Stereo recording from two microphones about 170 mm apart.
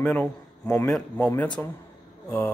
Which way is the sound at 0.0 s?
10° left (ahead or behind).